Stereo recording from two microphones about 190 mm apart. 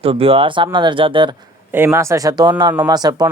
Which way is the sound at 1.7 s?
10° right (ahead or behind).